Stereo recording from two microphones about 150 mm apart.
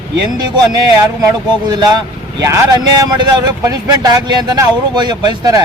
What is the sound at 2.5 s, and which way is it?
Speech, 25° right (ahead or behind).